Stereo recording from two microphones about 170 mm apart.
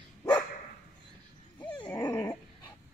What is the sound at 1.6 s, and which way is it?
Dog, 10° left (ahead or behind).